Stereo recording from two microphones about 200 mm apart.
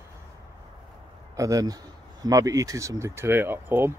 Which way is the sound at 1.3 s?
15° right (ahead or behind).